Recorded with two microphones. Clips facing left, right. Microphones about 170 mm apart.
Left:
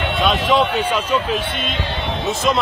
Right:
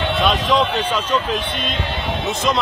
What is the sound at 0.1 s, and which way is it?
Speech, centre (ahead or behind).